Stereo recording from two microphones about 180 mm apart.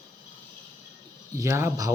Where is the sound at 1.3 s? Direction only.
15° right (ahead or behind).